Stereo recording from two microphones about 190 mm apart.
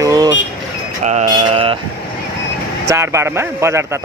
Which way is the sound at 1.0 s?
35° right (ahead or behind).